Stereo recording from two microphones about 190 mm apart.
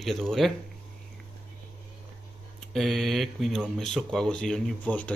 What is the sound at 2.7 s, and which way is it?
Speech, centre (ahead or behind).